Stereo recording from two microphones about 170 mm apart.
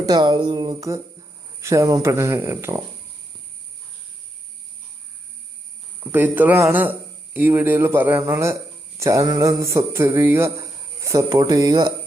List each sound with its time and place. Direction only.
0.0 s a sound: 25° right (ahead or behind)
1.6 s a man's voice: 15° right (ahead or behind)
6.0 s a man's voice: 10° right (ahead or behind)